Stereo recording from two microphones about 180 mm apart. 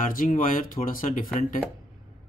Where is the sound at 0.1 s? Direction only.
50° left (ahead or behind).